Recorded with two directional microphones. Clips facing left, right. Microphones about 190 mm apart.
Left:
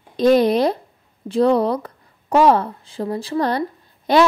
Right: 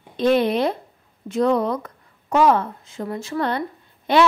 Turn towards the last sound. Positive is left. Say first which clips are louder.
# left 2 dB
turn(degrees=35)  # may be behind; listen again after turning